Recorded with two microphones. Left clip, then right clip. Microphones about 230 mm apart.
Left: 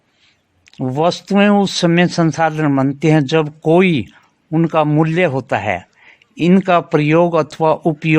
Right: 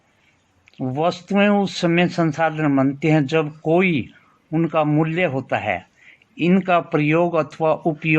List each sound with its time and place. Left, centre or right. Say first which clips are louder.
0.6 s speech: left 5 dB; left